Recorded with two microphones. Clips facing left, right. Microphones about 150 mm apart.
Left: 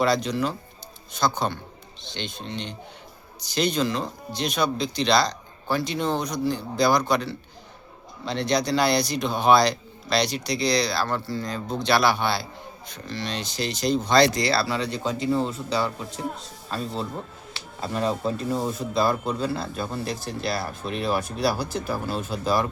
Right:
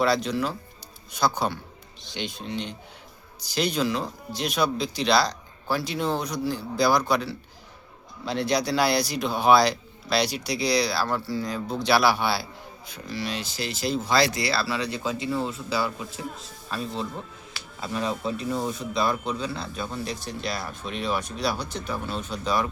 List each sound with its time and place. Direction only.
0.0 s speech: centre (ahead or behind)
17.5 s music: 30° left (ahead or behind)
18.3 s speech: centre (ahead or behind)